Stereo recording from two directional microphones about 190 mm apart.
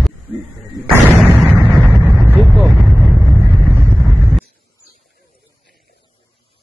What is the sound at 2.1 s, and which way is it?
Vehicle, 10° right (ahead or behind).